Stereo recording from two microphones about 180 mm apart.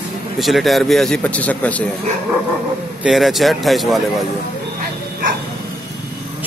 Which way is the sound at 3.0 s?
Centre (ahead or behind).